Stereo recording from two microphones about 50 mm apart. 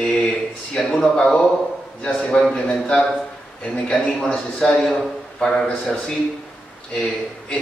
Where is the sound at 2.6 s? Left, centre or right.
Left.